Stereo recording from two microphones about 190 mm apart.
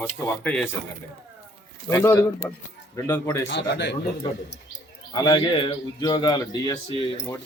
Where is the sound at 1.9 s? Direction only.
15° left (ahead or behind).